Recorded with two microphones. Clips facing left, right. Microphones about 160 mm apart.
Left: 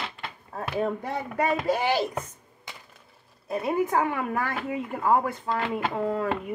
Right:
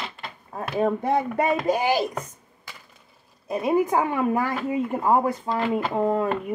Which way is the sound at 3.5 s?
20° right (ahead or behind).